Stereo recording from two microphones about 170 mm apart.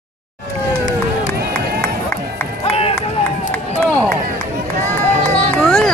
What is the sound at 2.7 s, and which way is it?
Run, 35° left (ahead or behind).